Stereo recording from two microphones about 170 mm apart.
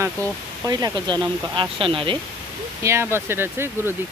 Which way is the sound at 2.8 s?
15° right (ahead or behind).